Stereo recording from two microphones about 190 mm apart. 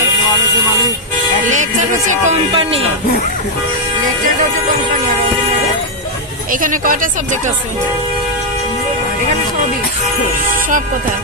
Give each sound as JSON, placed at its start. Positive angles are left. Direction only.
{"t": 1.5, "sound": "music", "side_deg": -40}
{"t": 6.5, "sound": "speech", "side_deg": -45}